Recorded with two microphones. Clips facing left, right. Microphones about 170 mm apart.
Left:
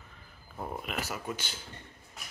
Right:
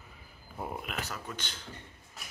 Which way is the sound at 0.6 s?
5° left (ahead or behind).